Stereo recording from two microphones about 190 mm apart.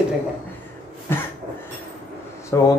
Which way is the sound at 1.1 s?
10° left (ahead or behind).